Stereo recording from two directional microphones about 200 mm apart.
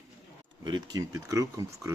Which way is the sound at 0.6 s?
20° right (ahead or behind).